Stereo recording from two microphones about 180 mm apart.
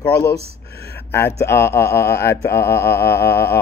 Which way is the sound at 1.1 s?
15° left (ahead or behind).